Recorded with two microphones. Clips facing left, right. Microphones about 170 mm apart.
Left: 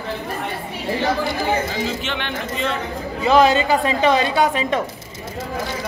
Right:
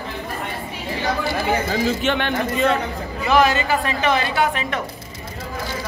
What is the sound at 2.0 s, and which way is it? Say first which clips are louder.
Speech: right 5 dB; 45° right (ahead or behind).